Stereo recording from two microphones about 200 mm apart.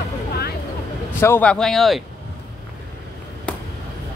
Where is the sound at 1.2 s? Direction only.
10° left (ahead or behind).